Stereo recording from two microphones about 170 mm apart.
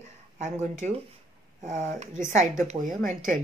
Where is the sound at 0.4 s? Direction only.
45° right (ahead or behind).